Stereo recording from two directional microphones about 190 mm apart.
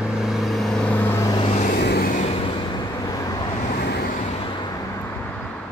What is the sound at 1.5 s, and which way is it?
Vehicle, 40° left (ahead or behind).